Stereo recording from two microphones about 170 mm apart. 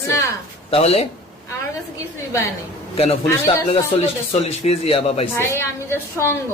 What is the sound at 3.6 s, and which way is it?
A man's voice, 35° left (ahead or behind).